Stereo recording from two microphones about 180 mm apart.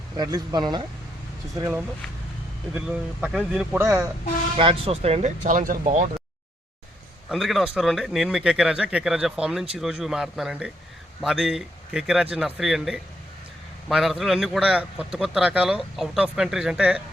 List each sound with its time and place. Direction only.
0.2 s speech: 25° right (ahead or behind)
4.5 s speech: 30° right (ahead or behind)
5.4 s speech: 50° right (ahead or behind)
7.3 s speech: centre (ahead or behind)